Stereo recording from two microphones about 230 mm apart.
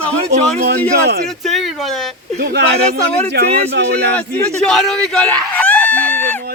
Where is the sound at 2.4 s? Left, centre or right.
Right.